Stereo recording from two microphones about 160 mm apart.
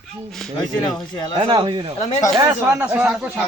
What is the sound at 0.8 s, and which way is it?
Speech, 30° left (ahead or behind).